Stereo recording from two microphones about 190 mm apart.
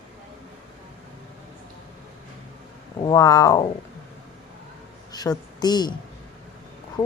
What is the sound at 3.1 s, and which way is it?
Speech, 20° left (ahead or behind).